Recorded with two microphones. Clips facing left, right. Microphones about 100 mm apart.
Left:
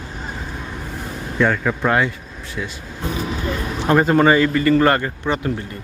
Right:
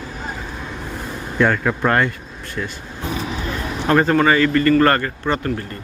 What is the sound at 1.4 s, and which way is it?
Speech, centre (ahead or behind).